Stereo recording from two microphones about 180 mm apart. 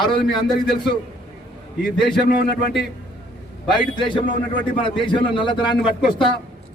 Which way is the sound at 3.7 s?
25° left (ahead or behind).